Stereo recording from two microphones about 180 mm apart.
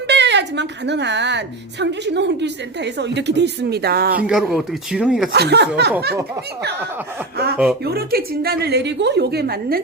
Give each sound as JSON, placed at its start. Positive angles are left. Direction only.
{"t": 0.1, "sound": "a woman's voice", "side_deg": -75}
{"t": 4.3, "sound": "speech", "side_deg": 0}
{"t": 5.3, "sound": "a woman's voice", "side_deg": -65}
{"t": 7.9, "sound": "a woman's voice", "side_deg": -60}